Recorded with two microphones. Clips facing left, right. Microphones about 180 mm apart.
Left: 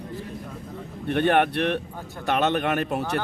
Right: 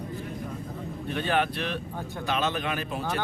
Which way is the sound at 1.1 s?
60° left (ahead or behind).